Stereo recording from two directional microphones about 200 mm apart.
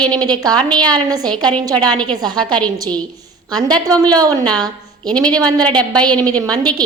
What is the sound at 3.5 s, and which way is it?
A woman's voice, 20° right (ahead or behind).